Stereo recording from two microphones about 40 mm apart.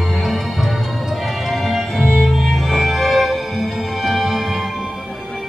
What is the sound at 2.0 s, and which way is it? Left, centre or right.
Music, centre.